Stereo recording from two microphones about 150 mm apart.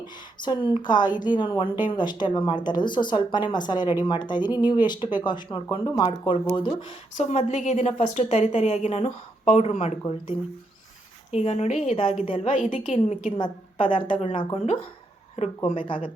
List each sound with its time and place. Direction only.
0.0 s a woman's voice: 30° left (ahead or behind)
7.2 s a woman's voice: 50° left (ahead or behind)
11.3 s a woman's voice: 45° left (ahead or behind)
13.4 s speech: 35° left (ahead or behind)